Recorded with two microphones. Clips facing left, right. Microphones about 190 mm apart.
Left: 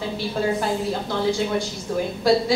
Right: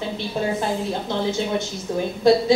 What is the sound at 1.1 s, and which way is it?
A woman's voice, 20° right (ahead or behind).